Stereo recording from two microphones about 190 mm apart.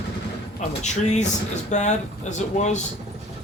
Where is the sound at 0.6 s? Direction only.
35° left (ahead or behind).